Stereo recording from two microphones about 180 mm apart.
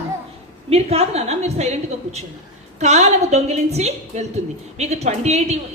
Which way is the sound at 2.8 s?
35° right (ahead or behind).